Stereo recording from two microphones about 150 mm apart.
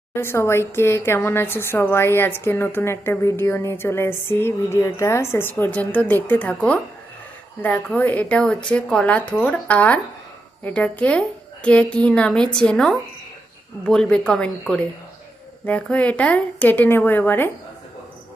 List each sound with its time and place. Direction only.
0.1 s speech: 15° left (ahead or behind)